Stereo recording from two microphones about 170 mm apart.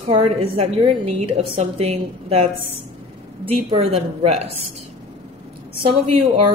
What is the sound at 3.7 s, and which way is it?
Speech, 35° right (ahead or behind).